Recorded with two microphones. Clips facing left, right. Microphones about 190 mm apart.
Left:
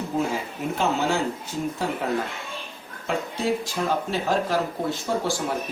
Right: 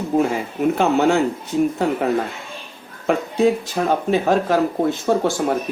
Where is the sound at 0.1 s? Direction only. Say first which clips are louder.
Right 8 dB; 55° right (ahead or behind).